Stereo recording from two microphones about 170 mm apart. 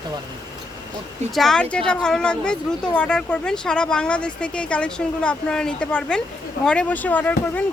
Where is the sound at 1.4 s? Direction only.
5° left (ahead or behind).